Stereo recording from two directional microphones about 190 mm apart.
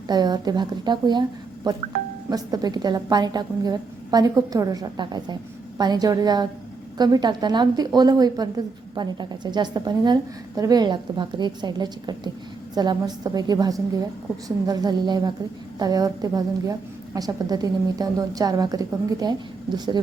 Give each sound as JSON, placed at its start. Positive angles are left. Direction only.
{"t": 0.1, "sound": "a woman's voice", "side_deg": -20}